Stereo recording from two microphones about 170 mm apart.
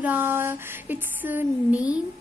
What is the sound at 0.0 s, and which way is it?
A woman's voice, 10° right (ahead or behind).